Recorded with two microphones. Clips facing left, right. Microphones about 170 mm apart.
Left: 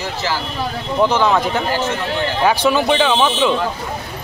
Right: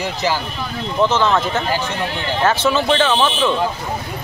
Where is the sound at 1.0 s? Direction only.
10° left (ahead or behind).